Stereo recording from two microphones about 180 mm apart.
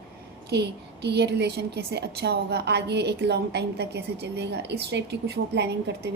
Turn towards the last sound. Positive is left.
turn(degrees=-70)  # may be behind; listen again after turning